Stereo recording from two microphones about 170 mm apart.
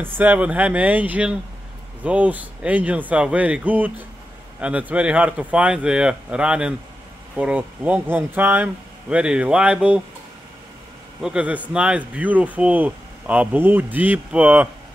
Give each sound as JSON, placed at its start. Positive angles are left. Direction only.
{"t": 0.0, "sound": "speech", "side_deg": -10}
{"t": 11.2, "sound": "speech", "side_deg": -5}